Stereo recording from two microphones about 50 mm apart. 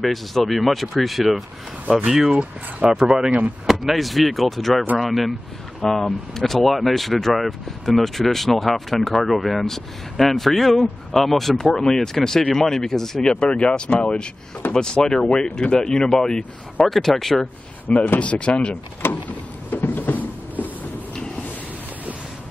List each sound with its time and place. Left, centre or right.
0.0 s speech: centre
3.3 s speech: right
3.8 s speech: centre
13.3 s speech: centre
14.7 s speech: centre
16.3 s speech: left
16.9 s speech: centre
17.4 s speech: left
19.0 s vehicle: left
19.7 s a sound: left